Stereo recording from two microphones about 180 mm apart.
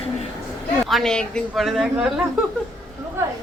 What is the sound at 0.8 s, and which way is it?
A woman's voice, centre (ahead or behind).